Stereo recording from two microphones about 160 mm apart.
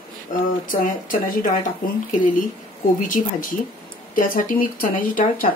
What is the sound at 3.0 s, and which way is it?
Speech, 60° left (ahead or behind).